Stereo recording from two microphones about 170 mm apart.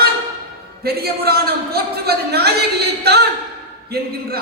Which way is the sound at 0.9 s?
65° right (ahead or behind).